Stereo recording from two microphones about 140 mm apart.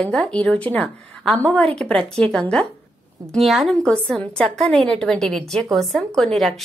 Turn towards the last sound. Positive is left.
turn(degrees=0)  # may be behind; listen again after turning